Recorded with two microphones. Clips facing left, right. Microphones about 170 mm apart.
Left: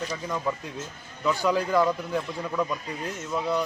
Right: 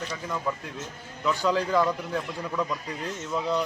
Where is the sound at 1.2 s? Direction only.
10° left (ahead or behind).